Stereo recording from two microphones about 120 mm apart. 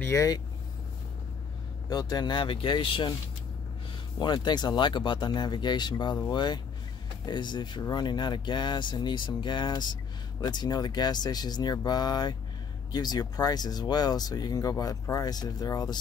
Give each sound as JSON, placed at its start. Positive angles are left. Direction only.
{"t": 0.0, "sound": "speech", "side_deg": 25}
{"t": 1.9, "sound": "speech", "side_deg": 35}
{"t": 4.2, "sound": "speech", "side_deg": 40}